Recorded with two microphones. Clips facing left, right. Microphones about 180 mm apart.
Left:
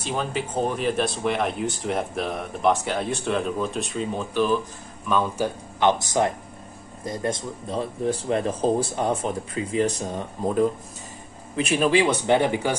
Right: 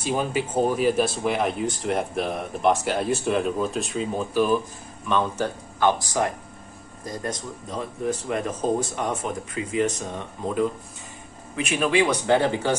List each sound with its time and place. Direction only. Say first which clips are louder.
0.0 s speech: right 2 dB; 10° right (ahead or behind)
5.0 s speech: left 1 dB; 5° left (ahead or behind)
5.8 s speech: left 1 dB; 20° left (ahead or behind)